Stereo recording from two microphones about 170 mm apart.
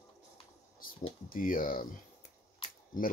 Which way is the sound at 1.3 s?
55° left (ahead or behind).